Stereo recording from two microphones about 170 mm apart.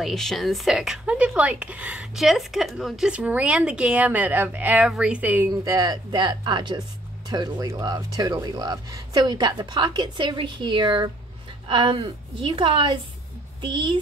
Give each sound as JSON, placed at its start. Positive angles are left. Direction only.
{"t": 0.0, "sound": "a woman's voice", "side_deg": 0}